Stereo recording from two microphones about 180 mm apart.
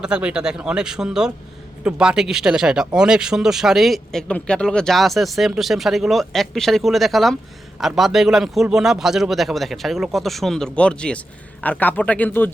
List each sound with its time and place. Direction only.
0.0 s speech: 5° right (ahead or behind)